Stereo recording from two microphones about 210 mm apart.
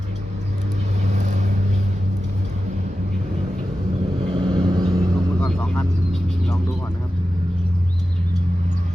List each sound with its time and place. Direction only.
1.1 s vehicle: 35° right (ahead or behind)
4.4 s vehicle: 20° right (ahead or behind)
5.4 s vehicle: 5° left (ahead or behind)